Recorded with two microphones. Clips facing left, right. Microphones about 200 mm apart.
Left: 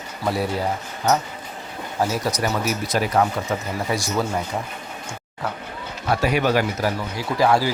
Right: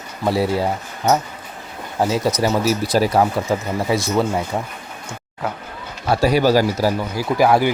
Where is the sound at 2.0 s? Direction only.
25° right (ahead or behind).